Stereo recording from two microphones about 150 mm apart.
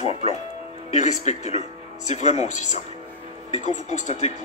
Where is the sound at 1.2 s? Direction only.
50° left (ahead or behind).